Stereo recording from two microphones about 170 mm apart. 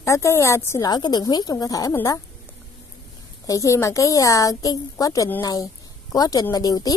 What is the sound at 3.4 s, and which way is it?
A woman's voice, 20° left (ahead or behind).